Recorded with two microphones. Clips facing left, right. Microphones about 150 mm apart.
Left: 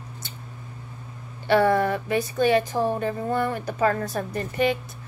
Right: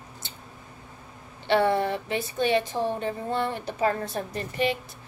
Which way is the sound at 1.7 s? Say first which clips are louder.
Left 3 dB; 50° left (ahead or behind).